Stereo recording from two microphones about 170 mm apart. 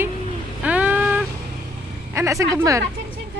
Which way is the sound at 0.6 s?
10° right (ahead or behind).